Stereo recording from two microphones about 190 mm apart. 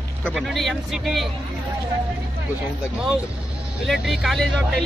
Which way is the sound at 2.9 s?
5° right (ahead or behind).